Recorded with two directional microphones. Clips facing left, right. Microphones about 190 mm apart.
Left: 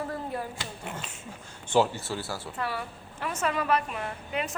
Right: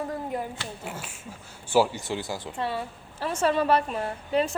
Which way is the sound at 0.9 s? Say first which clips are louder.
Right 1 dB; 10° right (ahead or behind).